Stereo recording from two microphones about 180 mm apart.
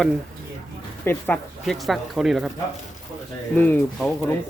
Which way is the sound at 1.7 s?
Centre (ahead or behind).